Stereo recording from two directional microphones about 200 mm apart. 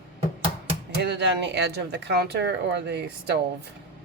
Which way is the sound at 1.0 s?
55° right (ahead or behind).